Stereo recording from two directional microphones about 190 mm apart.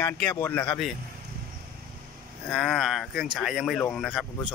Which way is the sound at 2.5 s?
Centre (ahead or behind).